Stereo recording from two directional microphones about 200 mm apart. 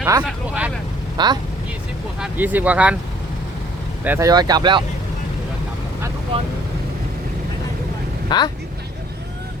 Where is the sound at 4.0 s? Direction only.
10° right (ahead or behind).